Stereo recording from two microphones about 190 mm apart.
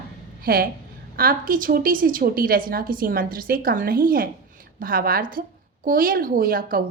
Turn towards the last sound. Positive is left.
turn(degrees=-50)  # may be behind; listen again after turning